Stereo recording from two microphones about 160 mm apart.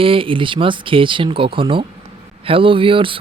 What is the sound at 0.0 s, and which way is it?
Speech, 35° right (ahead or behind).